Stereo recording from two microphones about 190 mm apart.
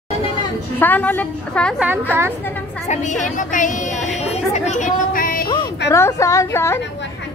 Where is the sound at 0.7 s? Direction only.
10° left (ahead or behind).